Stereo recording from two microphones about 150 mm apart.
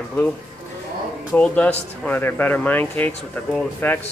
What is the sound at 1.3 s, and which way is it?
Speech, 10° left (ahead or behind).